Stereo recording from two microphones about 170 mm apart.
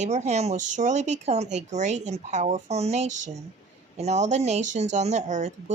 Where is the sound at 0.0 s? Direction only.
40° right (ahead or behind).